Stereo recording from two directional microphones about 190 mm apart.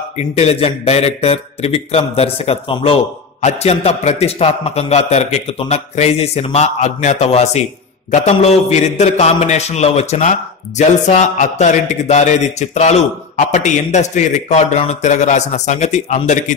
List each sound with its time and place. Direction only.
0.4 s a man's voice: 30° left (ahead or behind)